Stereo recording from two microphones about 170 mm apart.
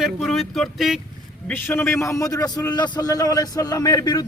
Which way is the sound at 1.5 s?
15° left (ahead or behind).